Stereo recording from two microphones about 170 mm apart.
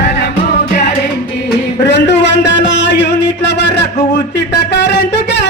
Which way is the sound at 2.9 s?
90° left.